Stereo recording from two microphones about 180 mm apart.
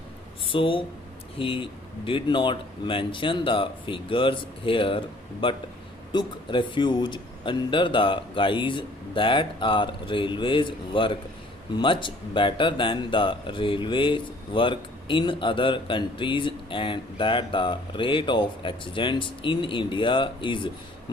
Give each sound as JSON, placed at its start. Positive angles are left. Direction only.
{"t": 0.4, "sound": "speech", "side_deg": 30}